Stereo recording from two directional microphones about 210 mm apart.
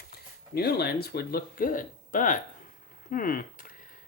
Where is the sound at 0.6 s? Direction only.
50° left (ahead or behind).